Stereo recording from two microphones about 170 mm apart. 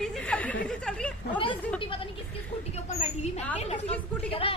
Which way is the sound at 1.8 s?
30° left (ahead or behind).